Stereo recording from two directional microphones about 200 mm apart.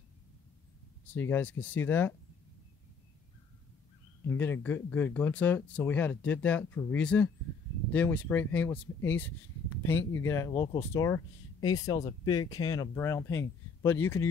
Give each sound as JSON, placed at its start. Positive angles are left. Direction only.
{"t": 1.0, "sound": "speech", "side_deg": 10}
{"t": 4.3, "sound": "speech", "side_deg": 10}